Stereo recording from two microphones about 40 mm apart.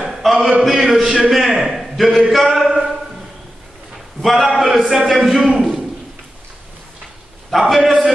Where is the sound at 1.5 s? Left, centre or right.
Centre.